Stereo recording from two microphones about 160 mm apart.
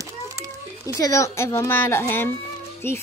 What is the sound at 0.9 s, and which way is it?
A woman's voice, 20° left (ahead or behind).